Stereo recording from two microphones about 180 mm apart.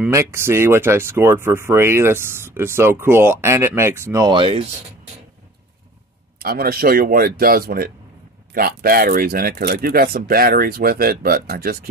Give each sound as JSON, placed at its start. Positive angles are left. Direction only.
{"t": 0.1, "sound": "speech", "side_deg": -15}
{"t": 6.4, "sound": "speech", "side_deg": -55}